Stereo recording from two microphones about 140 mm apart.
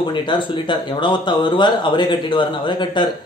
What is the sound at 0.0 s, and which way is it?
Speech, 35° left (ahead or behind).